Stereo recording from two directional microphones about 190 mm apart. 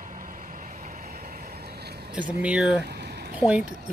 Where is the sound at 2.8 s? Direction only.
60° right (ahead or behind).